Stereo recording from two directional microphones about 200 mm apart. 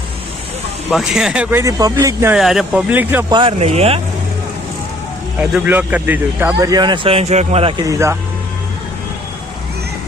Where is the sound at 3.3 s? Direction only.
30° right (ahead or behind).